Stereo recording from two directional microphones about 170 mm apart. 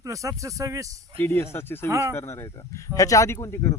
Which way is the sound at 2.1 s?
15° left (ahead or behind).